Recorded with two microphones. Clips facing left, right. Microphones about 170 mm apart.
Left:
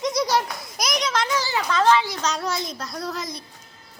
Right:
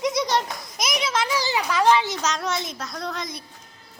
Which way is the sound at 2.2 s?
Centre (ahead or behind).